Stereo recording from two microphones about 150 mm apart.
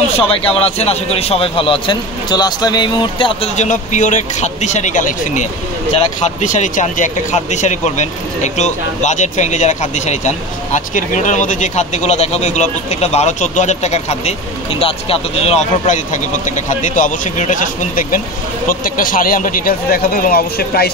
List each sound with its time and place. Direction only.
0.2 s a man's voice: 40° left (ahead or behind)
3.5 s speech: 55° left (ahead or behind); by 20.9 s 90° left